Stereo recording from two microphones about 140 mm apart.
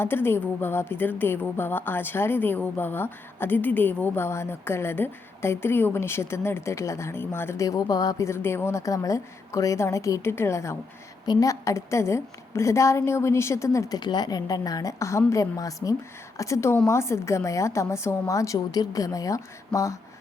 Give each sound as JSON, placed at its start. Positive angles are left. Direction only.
{"t": 0.0, "sound": "a woman's voice", "side_deg": 15}